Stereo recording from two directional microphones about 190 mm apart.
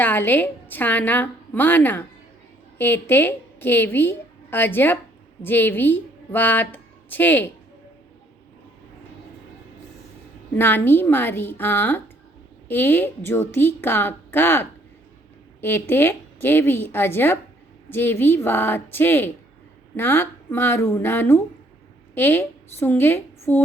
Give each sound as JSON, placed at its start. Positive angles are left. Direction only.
{"t": 0.0, "sound": "a woman's voice", "side_deg": 10}
{"t": 10.6, "sound": "a woman's voice", "side_deg": 10}